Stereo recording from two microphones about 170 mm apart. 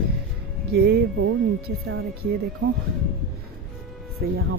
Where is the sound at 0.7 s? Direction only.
80° right.